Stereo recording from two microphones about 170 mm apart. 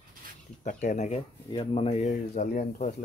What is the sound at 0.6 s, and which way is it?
Speech, 50° left (ahead or behind).